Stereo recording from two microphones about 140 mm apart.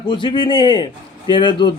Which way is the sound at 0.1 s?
35° left (ahead or behind).